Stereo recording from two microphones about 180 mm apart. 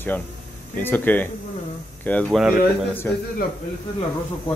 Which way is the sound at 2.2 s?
5° right (ahead or behind).